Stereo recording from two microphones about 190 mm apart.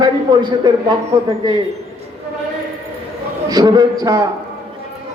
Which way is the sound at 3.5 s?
20° right (ahead or behind).